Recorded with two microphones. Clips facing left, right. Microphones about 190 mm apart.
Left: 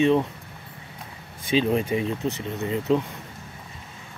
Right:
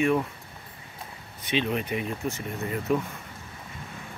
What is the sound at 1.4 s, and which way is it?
Speech, 35° left (ahead or behind).